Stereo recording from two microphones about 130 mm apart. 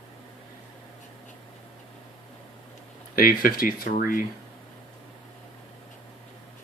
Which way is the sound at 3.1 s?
90° left.